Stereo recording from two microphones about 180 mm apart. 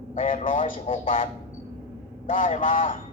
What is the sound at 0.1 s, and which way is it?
Speech, 45° left (ahead or behind).